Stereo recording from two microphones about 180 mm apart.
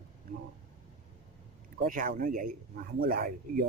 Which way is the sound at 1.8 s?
50° right (ahead or behind).